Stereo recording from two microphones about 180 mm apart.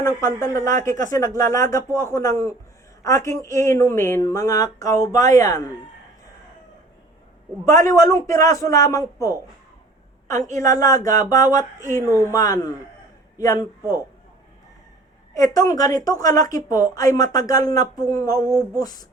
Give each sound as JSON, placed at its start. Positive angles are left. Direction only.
{"t": 0.0, "sound": "speech", "side_deg": 15}
{"t": 7.6, "sound": "speech", "side_deg": 15}
{"t": 10.5, "sound": "a woman's voice", "side_deg": 15}
{"t": 15.4, "sound": "a woman's voice", "side_deg": 20}